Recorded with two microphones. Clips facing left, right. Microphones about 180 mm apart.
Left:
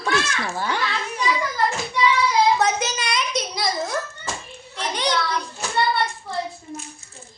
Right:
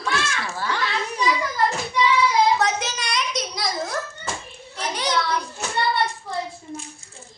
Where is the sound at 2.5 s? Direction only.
Centre (ahead or behind).